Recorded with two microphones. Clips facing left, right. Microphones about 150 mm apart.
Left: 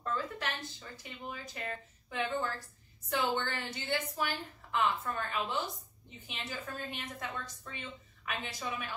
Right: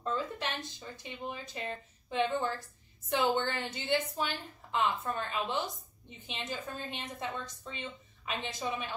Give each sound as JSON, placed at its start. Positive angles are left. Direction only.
{"t": 0.0, "sound": "a woman's voice", "side_deg": -20}